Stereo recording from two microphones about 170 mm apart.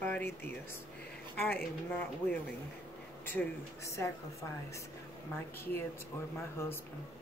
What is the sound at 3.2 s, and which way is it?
Speech, 15° left (ahead or behind).